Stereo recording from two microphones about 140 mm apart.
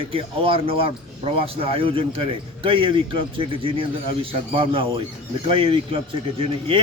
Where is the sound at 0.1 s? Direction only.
40° right (ahead or behind).